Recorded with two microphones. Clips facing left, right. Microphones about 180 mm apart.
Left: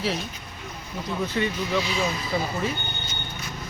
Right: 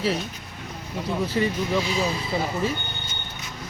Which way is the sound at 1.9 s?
35° right (ahead or behind).